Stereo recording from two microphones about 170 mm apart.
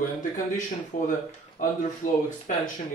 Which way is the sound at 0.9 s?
50° left (ahead or behind).